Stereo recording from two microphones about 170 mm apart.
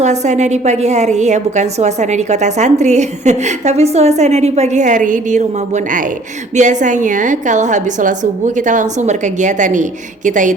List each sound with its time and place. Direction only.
0.0 s a woman's voice: 40° right (ahead or behind)